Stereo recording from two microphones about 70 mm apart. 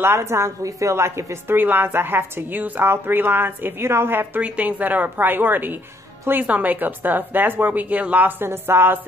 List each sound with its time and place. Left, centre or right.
0.0 s a woman's voice: right